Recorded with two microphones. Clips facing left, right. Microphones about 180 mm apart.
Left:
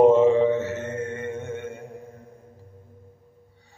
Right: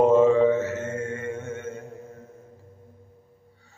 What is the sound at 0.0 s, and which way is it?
Mantra, 15° left (ahead or behind).